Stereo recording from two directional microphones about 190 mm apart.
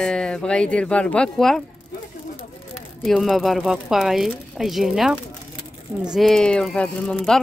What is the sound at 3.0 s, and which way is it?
Speech, 5° right (ahead or behind).